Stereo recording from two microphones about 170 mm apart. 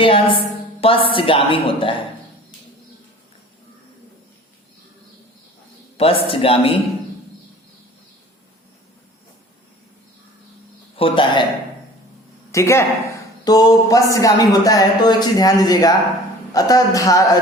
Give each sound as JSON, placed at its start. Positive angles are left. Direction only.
{"t": 0.0, "sound": "a woman's voice", "side_deg": 30}
{"t": 6.0, "sound": "a woman's voice", "side_deg": 35}
{"t": 10.9, "sound": "speech", "side_deg": 30}
{"t": 12.5, "sound": "speech", "side_deg": 15}